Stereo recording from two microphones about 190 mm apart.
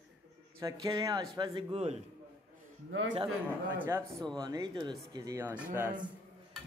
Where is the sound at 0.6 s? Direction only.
20° right (ahead or behind); by 2.0 s 35° right (ahead or behind).